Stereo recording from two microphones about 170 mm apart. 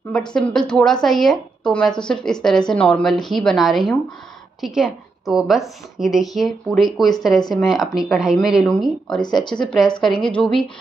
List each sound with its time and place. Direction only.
0.3 s a woman's voice: 5° left (ahead or behind)
9.2 s speech: 25° left (ahead or behind)
9.7 s a woman's voice: 5° left (ahead or behind)